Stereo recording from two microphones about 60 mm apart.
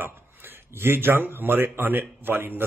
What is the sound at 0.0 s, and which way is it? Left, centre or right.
Speech, right.